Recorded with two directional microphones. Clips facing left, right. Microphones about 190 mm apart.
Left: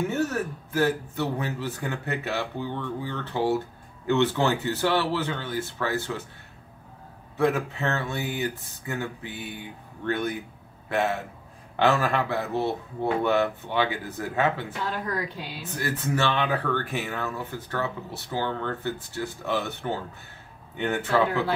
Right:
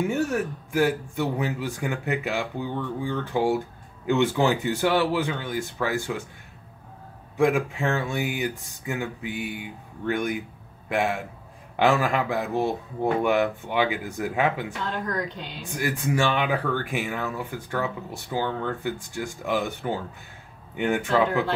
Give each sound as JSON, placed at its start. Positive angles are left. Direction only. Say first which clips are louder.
{"t": 0.1, "sound": "speech", "louder": "right 2 dB", "side_deg": -10}
{"t": 7.3, "sound": "a man's voice", "louder": "right 2 dB", "side_deg": -10}
{"t": 14.9, "sound": "speech", "louder": "right 1 dB", "side_deg": 10}
{"t": 15.6, "sound": "speech", "louder": "right 3 dB", "side_deg": -15}